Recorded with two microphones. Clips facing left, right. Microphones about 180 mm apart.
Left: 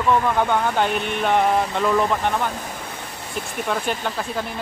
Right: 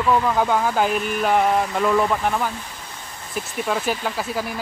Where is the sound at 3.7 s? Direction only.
5° right (ahead or behind).